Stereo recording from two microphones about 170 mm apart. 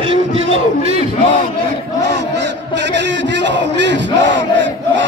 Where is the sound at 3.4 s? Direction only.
90° right.